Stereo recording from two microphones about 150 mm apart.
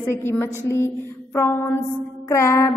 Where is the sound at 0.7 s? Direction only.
15° left (ahead or behind).